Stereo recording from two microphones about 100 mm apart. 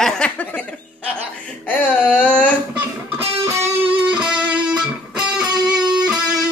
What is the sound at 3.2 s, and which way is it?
Music, 25° right (ahead or behind).